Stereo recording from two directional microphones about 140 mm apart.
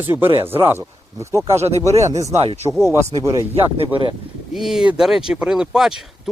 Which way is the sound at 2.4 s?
50° right (ahead or behind).